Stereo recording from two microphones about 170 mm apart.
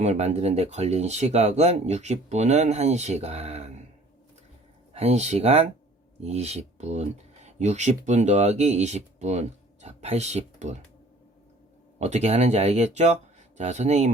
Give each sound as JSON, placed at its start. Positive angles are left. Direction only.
{"t": 0.0, "sound": "speech", "side_deg": -40}
{"t": 4.9, "sound": "speech", "side_deg": -40}
{"t": 11.9, "sound": "speech", "side_deg": -40}